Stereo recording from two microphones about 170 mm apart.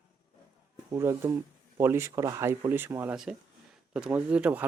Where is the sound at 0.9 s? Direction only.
15° right (ahead or behind).